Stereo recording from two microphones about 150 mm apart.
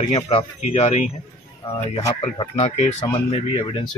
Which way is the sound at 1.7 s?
25° left (ahead or behind).